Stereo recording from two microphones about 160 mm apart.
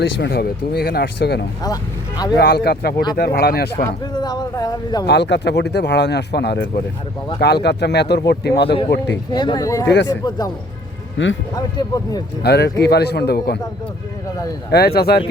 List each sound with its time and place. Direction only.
0.2 s speech: 75° left (ahead or behind); by 1.5 s 90° left
1.6 s speech: 20° left (ahead or behind)
2.3 s speech: 80° left
3.8 s a sound: 25° left (ahead or behind)
5.0 s speech: 90° left
9.3 s speech: 30° left (ahead or behind)
11.5 s speech: 25° left (ahead or behind)
12.4 s speech: 90° left
14.7 s speech: 80° left